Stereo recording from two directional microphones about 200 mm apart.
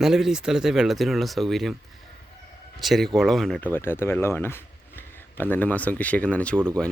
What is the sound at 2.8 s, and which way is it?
Speech, centre (ahead or behind).